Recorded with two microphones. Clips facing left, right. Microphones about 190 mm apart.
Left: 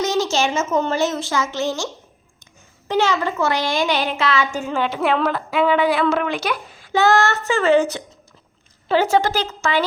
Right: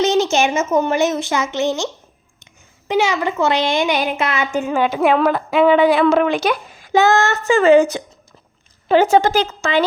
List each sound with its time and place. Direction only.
0.0 s a woman's voice: 20° right (ahead or behind)
8.9 s speech: 20° right (ahead or behind)